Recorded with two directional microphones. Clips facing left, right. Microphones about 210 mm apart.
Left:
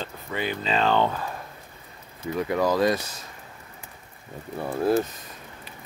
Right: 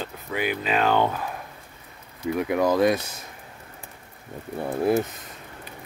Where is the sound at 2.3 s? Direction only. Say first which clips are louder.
Right 1 dB; 10° right (ahead or behind).